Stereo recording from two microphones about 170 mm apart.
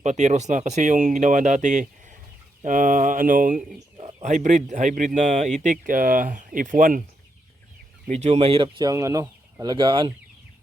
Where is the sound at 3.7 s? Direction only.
30° right (ahead or behind).